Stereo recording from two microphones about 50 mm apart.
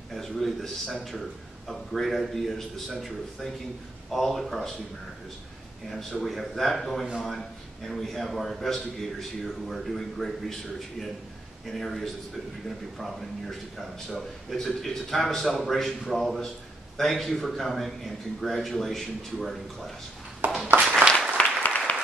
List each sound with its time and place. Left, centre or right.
0.1 s a man's voice: centre
5.9 s a man's voice: centre
20.4 s a sound: right
21.4 s applause: left